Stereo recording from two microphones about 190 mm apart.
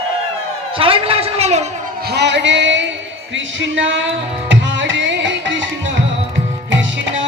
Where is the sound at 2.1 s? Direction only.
65° right (ahead or behind).